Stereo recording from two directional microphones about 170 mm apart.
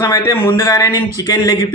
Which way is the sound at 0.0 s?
15° left (ahead or behind).